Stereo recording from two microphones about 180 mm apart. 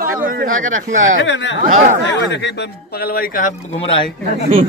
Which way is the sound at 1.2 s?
90° left.